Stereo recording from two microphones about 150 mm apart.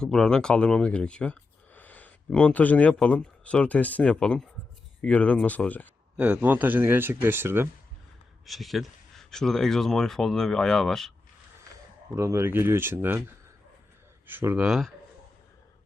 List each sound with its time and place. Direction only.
0.0 s speech: 5° left (ahead or behind)
6.1 s speech: 10° right (ahead or behind)
8.4 s speech: centre (ahead or behind)
12.1 s speech: 20° right (ahead or behind); by 14.9 s 5° right (ahead or behind)